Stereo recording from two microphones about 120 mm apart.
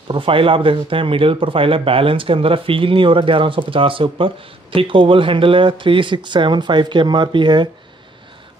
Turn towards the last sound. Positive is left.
turn(degrees=-40)  # may be behind; listen again after turning